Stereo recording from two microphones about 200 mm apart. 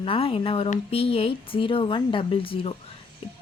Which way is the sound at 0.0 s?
25° left (ahead or behind).